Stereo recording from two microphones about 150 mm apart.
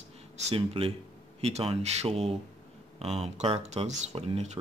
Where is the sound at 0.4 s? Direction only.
40° right (ahead or behind).